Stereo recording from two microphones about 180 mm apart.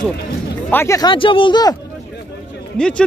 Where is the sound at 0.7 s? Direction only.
15° left (ahead or behind).